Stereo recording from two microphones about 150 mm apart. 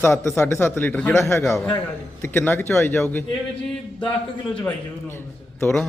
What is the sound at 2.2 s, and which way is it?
A man's voice, 15° left (ahead or behind).